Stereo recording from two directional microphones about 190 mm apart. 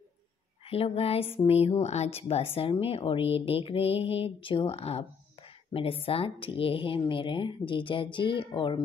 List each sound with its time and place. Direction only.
0.7 s speech: 30° left (ahead or behind)